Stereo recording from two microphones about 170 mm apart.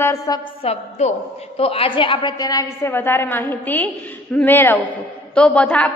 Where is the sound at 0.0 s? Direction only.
20° left (ahead or behind).